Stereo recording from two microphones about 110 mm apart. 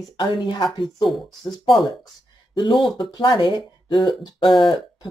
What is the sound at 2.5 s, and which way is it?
Speech, 35° left (ahead or behind).